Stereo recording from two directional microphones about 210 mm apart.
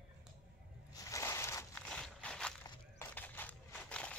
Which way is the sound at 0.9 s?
15° left (ahead or behind).